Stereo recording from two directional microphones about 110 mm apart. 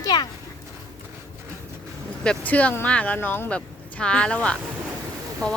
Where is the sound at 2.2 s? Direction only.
10° left (ahead or behind).